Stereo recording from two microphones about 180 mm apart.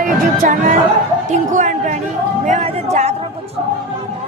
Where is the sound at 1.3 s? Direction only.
45° right (ahead or behind).